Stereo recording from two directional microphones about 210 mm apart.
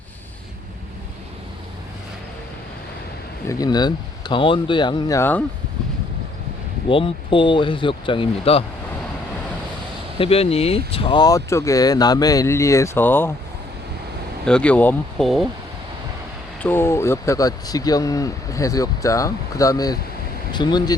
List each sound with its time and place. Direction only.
3.5 s speech: 20° left (ahead or behind)
6.8 s speech: 25° left (ahead or behind)
10.2 s speech: 30° left (ahead or behind); by 13.3 s 10° left (ahead or behind)
14.4 s speech: 5° left (ahead or behind)
16.6 s speech: 10° left (ahead or behind)